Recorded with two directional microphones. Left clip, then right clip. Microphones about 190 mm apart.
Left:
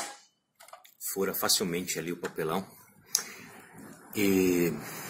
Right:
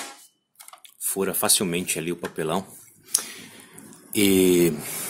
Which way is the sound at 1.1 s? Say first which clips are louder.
Right 5 dB; 50° right (ahead or behind).